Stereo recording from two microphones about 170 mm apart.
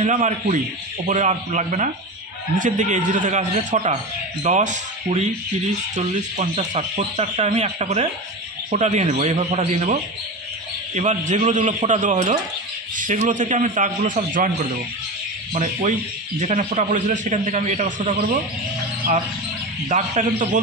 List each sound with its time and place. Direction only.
0.0 s a man's voice: 45° right (ahead or behind)
11.0 s a man's voice: 45° right (ahead or behind)
15.5 s a man's voice: 45° right (ahead or behind)
19.9 s a man's voice: 45° right (ahead or behind)